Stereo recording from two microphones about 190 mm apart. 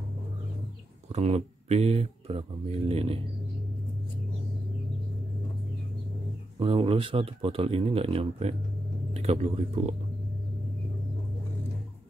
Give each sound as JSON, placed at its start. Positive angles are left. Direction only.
{"t": 1.0, "sound": "speech", "side_deg": -35}
{"t": 6.6, "sound": "speech", "side_deg": -30}